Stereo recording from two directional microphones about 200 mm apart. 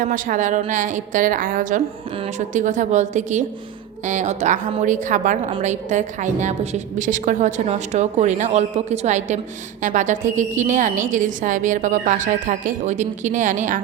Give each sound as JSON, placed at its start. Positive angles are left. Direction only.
{"t": 0.0, "sound": "a woman's voice", "side_deg": -40}